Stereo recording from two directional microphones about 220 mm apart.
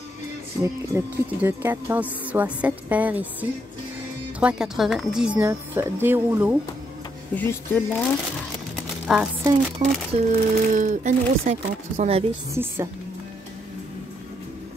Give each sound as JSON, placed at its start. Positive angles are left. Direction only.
{"t": 0.6, "sound": "speech", "side_deg": -10}
{"t": 7.3, "sound": "speech", "side_deg": 10}
{"t": 9.0, "sound": "speech", "side_deg": -5}
{"t": 9.8, "sound": "a woman's voice", "side_deg": -30}